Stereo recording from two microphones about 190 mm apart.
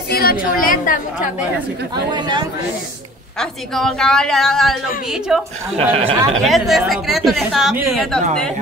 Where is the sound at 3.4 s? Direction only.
Centre (ahead or behind).